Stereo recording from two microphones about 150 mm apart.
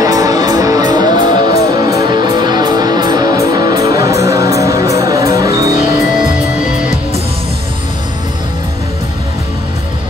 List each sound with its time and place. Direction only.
0.0 s music: 25° right (ahead or behind)
6.1 s music: 5° right (ahead or behind)